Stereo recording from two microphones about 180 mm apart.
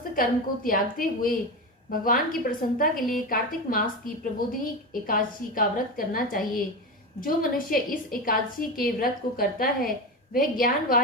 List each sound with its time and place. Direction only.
0.2 s a woman's voice: 50° left (ahead or behind)